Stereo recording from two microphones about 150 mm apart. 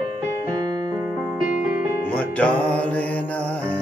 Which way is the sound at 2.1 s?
10° left (ahead or behind).